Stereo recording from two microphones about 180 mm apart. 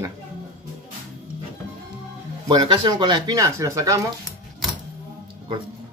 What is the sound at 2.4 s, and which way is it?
Speech, 25° right (ahead or behind).